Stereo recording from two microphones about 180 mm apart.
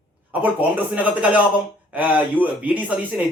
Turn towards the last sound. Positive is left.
turn(degrees=-10)  # may be behind; listen again after turning